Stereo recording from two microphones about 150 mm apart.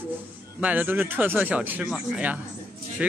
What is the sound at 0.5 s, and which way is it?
Speech, 10° right (ahead or behind).